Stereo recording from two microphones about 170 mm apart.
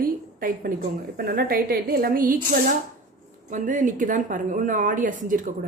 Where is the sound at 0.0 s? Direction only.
60° right (ahead or behind).